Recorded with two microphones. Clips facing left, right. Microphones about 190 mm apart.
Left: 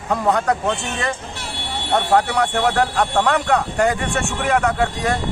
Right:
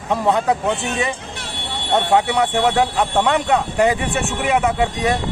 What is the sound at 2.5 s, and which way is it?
Speech, 15° right (ahead or behind).